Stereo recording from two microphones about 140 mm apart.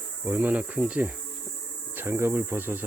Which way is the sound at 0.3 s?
10° right (ahead or behind).